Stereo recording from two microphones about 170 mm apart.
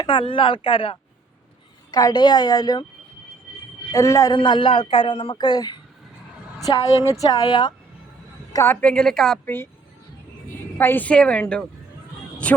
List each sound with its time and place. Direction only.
0.0 s speech: 30° left (ahead or behind)
3.9 s speech: 20° left (ahead or behind)
4.4 s speech: 30° left (ahead or behind)
8.5 s a woman's voice: 10° left (ahead or behind)
10.8 s a woman's voice: 10° left (ahead or behind)